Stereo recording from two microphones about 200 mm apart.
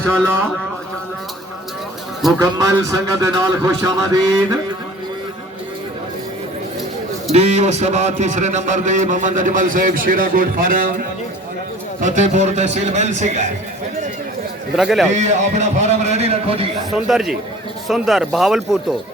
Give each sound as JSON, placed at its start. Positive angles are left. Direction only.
{"t": 0.0, "sound": "speech", "side_deg": -10}
{"t": 2.4, "sound": "speech", "side_deg": -15}
{"t": 7.3, "sound": "a man's voice", "side_deg": -35}
{"t": 14.8, "sound": "speech", "side_deg": -5}
{"t": 15.1, "sound": "a man's voice", "side_deg": -35}
{"t": 16.9, "sound": "speech", "side_deg": 0}